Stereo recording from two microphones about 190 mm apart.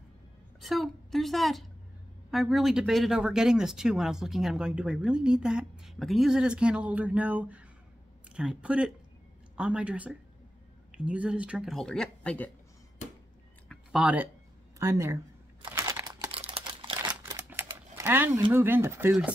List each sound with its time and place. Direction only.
0.6 s a woman's voice: centre (ahead or behind)
13.7 s a sound: 5° right (ahead or behind)
14.8 s speech: 15° right (ahead or behind)
15.7 s crumpling: 15° right (ahead or behind)
16.3 s typing: 30° right (ahead or behind)
17.6 s typing: 10° right (ahead or behind)
18.0 s speech: 10° right (ahead or behind)